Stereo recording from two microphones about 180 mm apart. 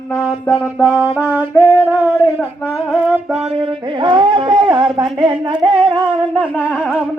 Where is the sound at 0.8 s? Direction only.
10° right (ahead or behind).